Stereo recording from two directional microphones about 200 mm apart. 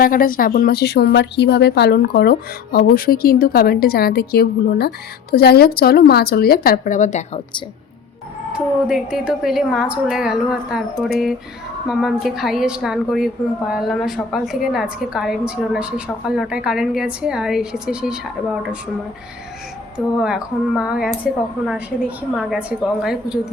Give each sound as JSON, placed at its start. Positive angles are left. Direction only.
{"t": 0.0, "sound": "speech", "side_deg": 45}
{"t": 8.5, "sound": "a woman's voice", "side_deg": -5}
{"t": 11.9, "sound": "a woman's voice", "side_deg": 0}
{"t": 20.1, "sound": "a woman's voice", "side_deg": -5}